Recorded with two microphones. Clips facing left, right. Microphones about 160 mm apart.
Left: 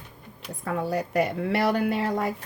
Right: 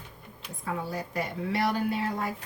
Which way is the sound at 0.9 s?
70° left (ahead or behind).